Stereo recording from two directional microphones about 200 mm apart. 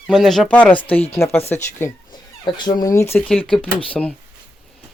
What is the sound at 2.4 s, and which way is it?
Speech, 20° left (ahead or behind).